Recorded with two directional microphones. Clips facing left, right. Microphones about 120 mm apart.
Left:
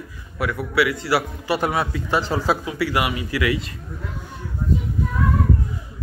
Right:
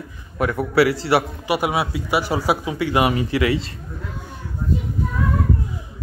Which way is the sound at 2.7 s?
20° right (ahead or behind).